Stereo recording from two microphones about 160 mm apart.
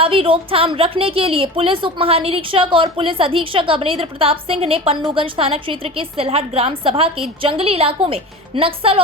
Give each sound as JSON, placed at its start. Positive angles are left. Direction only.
{"t": 0.0, "sound": "a woman's voice", "side_deg": -35}